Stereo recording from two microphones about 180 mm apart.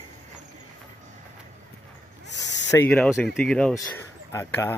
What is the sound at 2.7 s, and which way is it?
Speech, 15° left (ahead or behind).